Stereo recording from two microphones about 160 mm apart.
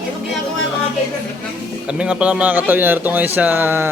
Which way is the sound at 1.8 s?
5° right (ahead or behind).